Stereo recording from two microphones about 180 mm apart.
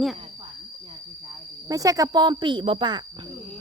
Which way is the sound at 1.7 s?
20° right (ahead or behind).